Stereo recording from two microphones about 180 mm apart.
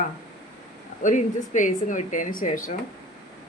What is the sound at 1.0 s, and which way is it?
Speech, 45° left (ahead or behind).